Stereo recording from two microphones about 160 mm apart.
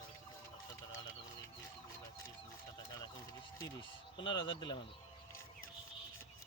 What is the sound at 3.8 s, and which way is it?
Speech, 30° left (ahead or behind).